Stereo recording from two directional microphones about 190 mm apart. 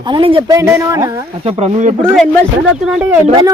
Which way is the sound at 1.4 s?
35° right (ahead or behind).